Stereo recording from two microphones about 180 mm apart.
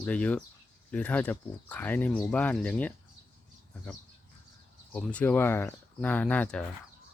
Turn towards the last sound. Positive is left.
turn(degrees=5)  # may be behind; listen again after turning